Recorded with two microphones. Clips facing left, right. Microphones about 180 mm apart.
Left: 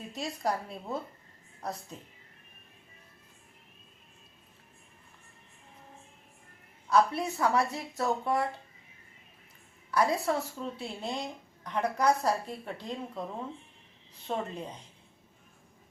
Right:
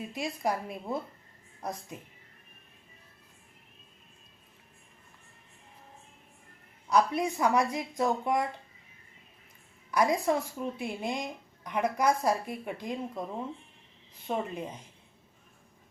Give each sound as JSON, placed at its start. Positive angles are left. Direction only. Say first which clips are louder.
{"t": 0.1, "sound": "a woman's voice", "louder": "even", "side_deg": -10}
{"t": 6.9, "sound": "a woman's voice", "louder": "even", "side_deg": -15}
{"t": 9.9, "sound": "a woman's voice", "louder": "right 1 dB", "side_deg": -15}
{"t": 14.3, "sound": "a woman's voice", "louder": "right 2 dB", "side_deg": -10}